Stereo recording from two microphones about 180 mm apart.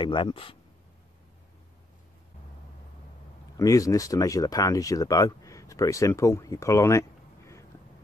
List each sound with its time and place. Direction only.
0.0 s speech: 25° left (ahead or behind)
3.5 s speech: 20° left (ahead or behind)